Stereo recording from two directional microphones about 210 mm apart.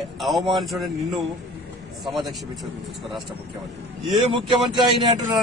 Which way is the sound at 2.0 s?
Centre (ahead or behind).